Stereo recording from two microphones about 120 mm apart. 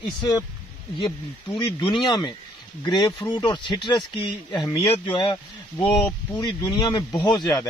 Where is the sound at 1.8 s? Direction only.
40° left (ahead or behind).